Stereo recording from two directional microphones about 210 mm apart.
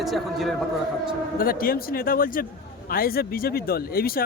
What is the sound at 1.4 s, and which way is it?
Speech, 45° left (ahead or behind).